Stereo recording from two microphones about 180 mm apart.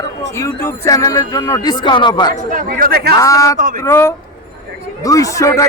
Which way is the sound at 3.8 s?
15° left (ahead or behind).